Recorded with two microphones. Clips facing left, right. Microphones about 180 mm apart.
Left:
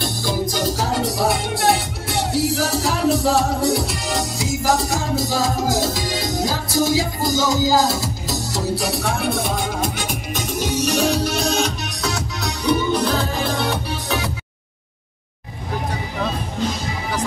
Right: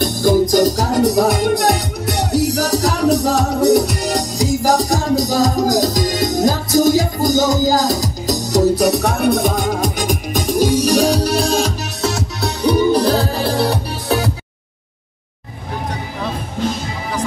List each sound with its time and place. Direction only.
0.2 s music: 45° right (ahead or behind)